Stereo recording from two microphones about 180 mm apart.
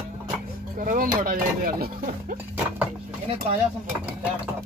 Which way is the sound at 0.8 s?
50° right (ahead or behind).